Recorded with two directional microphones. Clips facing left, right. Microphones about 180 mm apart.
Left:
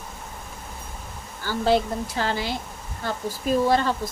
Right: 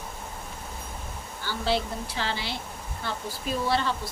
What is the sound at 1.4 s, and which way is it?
Speech, 45° left (ahead or behind).